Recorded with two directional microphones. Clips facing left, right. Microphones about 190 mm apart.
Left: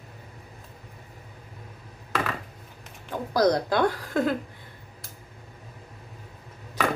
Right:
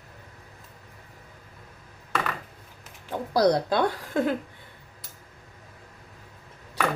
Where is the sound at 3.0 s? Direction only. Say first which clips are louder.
Right 1 dB; 25° right (ahead or behind).